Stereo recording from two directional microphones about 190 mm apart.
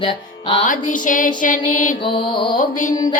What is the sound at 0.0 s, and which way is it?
Music, 25° left (ahead or behind).